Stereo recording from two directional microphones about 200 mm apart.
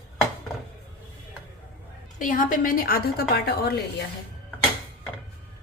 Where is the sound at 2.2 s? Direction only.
40° left (ahead or behind).